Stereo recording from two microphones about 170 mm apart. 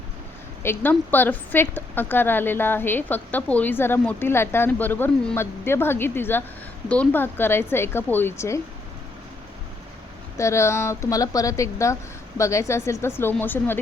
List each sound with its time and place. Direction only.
0.6 s a woman's voice: 10° left (ahead or behind)
10.3 s a woman's voice: 15° left (ahead or behind)